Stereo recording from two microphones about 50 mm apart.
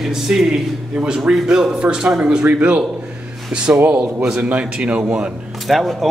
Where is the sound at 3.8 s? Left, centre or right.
Right.